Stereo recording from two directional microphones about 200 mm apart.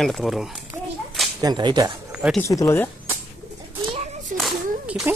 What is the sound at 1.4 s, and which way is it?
Speech, 20° right (ahead or behind).